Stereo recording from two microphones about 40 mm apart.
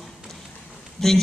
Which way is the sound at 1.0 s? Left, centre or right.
Centre.